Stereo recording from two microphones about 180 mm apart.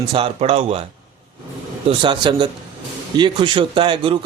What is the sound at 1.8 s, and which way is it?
Speech, 30° right (ahead or behind).